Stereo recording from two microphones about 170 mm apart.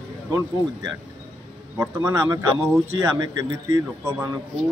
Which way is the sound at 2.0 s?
15° right (ahead or behind).